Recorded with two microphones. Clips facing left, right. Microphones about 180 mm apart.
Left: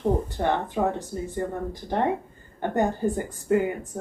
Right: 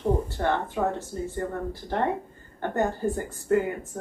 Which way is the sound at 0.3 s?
15° left (ahead or behind).